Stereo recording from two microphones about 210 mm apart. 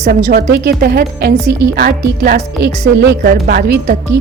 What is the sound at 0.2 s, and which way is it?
Speech, 30° right (ahead or behind).